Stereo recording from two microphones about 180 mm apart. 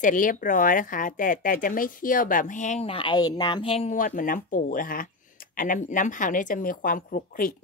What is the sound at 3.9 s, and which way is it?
A woman's voice, 45° left (ahead or behind).